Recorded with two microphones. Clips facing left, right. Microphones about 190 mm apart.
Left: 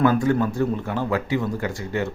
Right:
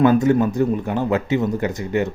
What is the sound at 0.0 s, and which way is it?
Speech, 20° right (ahead or behind).